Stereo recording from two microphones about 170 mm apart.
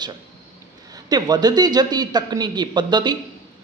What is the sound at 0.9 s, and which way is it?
A man's voice, 25° right (ahead or behind).